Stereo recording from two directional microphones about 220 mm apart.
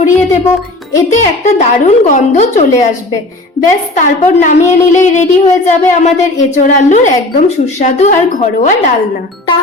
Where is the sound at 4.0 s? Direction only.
35° left (ahead or behind).